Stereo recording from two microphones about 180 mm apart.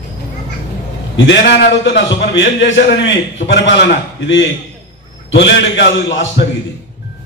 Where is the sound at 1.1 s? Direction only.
85° left.